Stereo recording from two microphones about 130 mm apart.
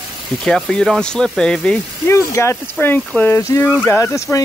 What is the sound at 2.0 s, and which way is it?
Speech, 20° left (ahead or behind).